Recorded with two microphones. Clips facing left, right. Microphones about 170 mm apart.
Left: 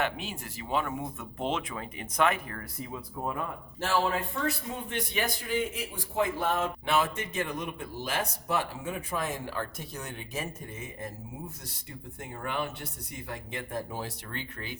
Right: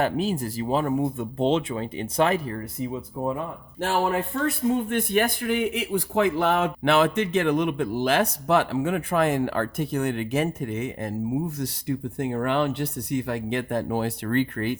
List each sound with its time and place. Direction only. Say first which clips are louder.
0.0 s speech: right 9 dB; 35° right (ahead or behind)
3.8 s speech: right 4 dB; 55° right (ahead or behind)